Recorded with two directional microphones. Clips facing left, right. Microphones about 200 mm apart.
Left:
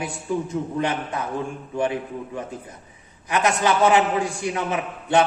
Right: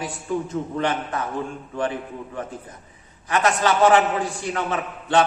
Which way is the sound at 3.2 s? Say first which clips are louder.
Even; 15° left (ahead or behind).